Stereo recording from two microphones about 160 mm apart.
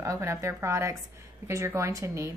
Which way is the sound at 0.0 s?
15° right (ahead or behind).